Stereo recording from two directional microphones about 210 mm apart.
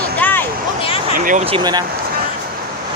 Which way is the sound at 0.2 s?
10° left (ahead or behind).